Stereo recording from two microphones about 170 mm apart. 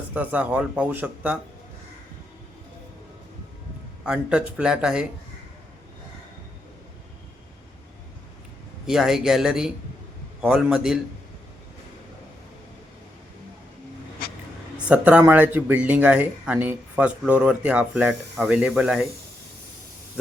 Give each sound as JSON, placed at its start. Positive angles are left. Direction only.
{"t": 0.1, "sound": "speech", "side_deg": -10}
{"t": 4.0, "sound": "speech", "side_deg": -5}
{"t": 8.9, "sound": "speech", "side_deg": 0}
{"t": 14.8, "sound": "speech", "side_deg": -5}